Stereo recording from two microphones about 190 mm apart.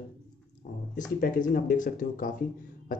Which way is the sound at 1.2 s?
45° left (ahead or behind).